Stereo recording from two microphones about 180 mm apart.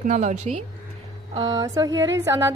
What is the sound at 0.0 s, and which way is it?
Speech, 40° right (ahead or behind).